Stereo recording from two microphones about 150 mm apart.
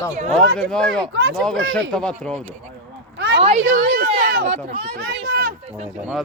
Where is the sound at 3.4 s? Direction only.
45° right (ahead or behind).